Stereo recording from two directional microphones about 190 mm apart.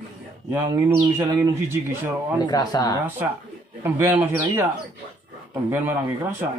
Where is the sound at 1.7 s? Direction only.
10° right (ahead or behind).